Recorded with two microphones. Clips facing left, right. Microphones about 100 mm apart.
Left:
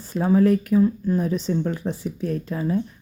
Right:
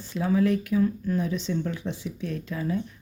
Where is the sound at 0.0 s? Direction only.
40° left (ahead or behind).